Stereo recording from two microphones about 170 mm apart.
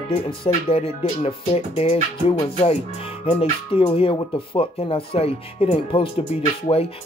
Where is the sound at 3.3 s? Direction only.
30° left (ahead or behind).